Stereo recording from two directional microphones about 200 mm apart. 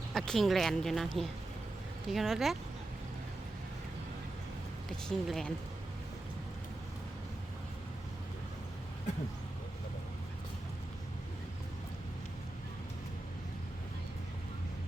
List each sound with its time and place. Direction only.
0.1 s speech: centre (ahead or behind)
5.0 s speech: centre (ahead or behind)